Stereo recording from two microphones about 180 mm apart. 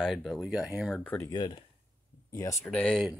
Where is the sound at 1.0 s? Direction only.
10° left (ahead or behind).